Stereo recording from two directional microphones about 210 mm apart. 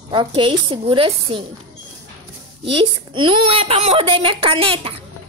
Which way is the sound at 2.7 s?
25° right (ahead or behind).